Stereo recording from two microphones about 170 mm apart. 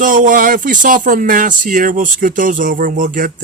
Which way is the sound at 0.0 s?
50° right (ahead or behind).